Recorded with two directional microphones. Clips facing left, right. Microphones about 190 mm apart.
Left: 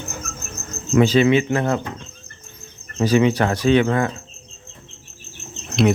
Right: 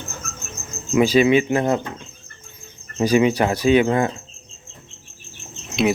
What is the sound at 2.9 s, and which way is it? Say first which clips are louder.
Speech: even; 15° right (ahead or behind).